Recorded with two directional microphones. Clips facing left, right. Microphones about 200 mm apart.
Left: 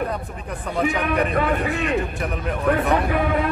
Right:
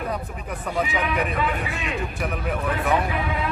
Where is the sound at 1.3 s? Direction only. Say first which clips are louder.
Left 5 dB; 50° left (ahead or behind).